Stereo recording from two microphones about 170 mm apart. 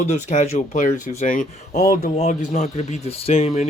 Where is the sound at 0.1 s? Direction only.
45° left (ahead or behind).